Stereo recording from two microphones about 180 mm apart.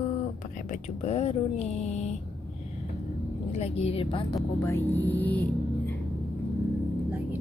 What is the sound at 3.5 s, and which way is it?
Mantra, 35° left (ahead or behind).